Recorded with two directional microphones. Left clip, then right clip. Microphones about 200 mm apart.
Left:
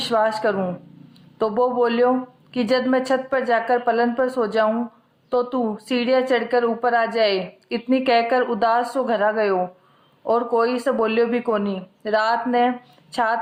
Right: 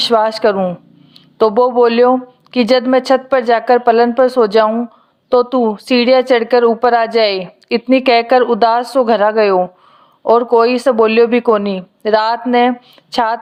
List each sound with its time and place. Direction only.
0.0 s a woman's voice: 45° right (ahead or behind)